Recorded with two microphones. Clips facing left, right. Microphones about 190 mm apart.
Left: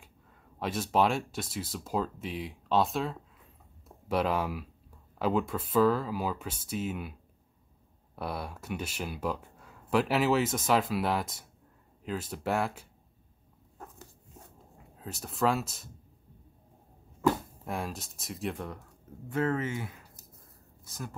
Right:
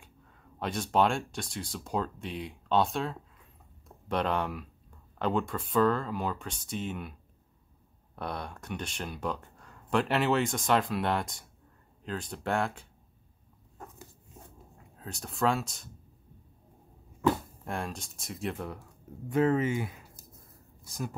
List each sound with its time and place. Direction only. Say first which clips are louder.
0.6 s speech: even; 5° left (ahead or behind)
8.2 s speech: left 1 dB; 5° left (ahead or behind)
15.0 s speech: left 1 dB; 5° left (ahead or behind)
17.6 s speech: even; centre (ahead or behind)
19.2 s a woman's voice: right 4 dB; 15° right (ahead or behind)